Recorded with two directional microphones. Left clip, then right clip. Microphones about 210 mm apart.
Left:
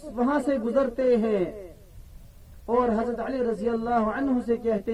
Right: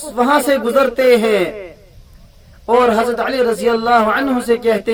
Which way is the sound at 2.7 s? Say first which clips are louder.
Right 12 dB; 25° right (ahead or behind).